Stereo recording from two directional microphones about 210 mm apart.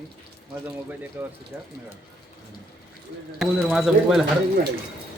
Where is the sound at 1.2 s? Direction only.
10° right (ahead or behind).